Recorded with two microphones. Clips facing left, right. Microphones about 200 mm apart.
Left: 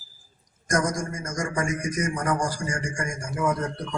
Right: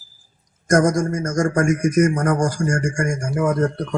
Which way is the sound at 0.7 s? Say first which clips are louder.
Right 9 dB; 45° right (ahead or behind).